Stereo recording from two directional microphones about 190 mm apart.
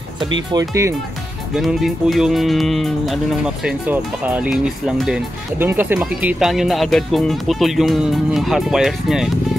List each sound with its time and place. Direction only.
0.5 s speech: 20° right (ahead or behind)
1.5 s speech: centre (ahead or behind)